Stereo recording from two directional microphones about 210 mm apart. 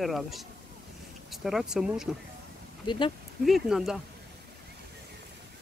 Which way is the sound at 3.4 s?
Centre (ahead or behind).